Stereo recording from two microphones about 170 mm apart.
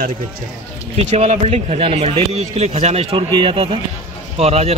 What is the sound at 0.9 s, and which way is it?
A man's voice, 40° right (ahead or behind).